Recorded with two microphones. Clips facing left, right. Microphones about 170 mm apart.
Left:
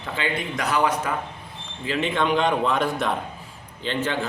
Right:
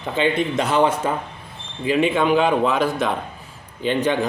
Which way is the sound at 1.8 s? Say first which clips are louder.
Right 5 dB; 15° right (ahead or behind).